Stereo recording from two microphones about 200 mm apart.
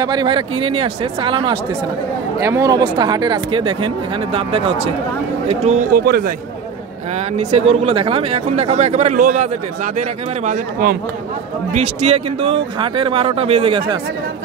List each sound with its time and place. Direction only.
0.0 s speech: 20° right (ahead or behind); by 6.3 s 50° right (ahead or behind)
7.3 s speech: 30° right (ahead or behind)